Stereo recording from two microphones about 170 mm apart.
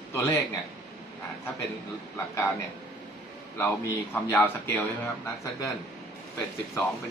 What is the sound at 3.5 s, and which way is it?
A man's voice, 10° left (ahead or behind).